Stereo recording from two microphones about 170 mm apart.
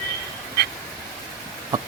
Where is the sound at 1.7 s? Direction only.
20° right (ahead or behind).